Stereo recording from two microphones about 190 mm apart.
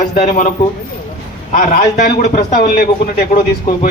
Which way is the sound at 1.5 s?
45° left (ahead or behind).